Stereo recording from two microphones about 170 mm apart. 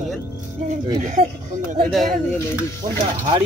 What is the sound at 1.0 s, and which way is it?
Speech, 45° right (ahead or behind).